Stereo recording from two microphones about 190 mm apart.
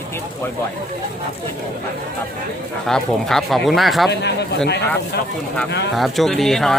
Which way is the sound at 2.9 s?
Centre (ahead or behind).